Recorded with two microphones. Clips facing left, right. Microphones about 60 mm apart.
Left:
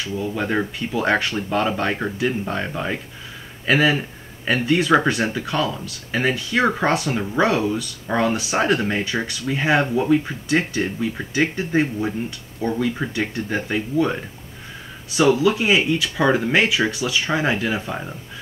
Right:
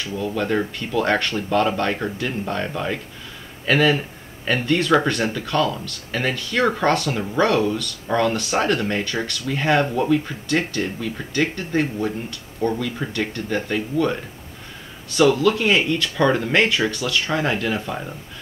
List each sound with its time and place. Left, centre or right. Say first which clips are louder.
0.3 s speech: right 2 dB; centre